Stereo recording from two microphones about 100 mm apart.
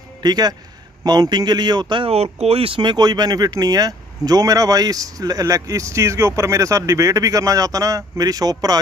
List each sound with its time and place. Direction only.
0.2 s speech: 45° right (ahead or behind)
2.0 s speech: 90° right
2.8 s speech: 45° right (ahead or behind)